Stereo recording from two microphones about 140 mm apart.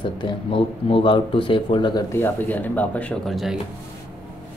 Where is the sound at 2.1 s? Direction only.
15° left (ahead or behind).